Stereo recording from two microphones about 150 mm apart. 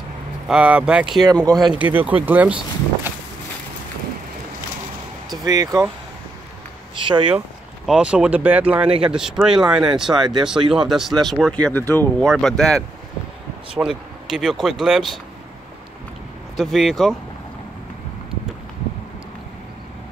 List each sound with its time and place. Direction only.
0.5 s speech: 5° right (ahead or behind)
1.0 s speech: 30° right (ahead or behind)
1.7 s speech: 10° right (ahead or behind)
5.4 s speech: 25° right (ahead or behind)
7.0 s speech: 35° right (ahead or behind)
7.3 s speech: 5° right (ahead or behind); by 12.3 s 15° left (ahead or behind)
12.3 s speech: 5° left (ahead or behind)
16.5 s speech: centre (ahead or behind)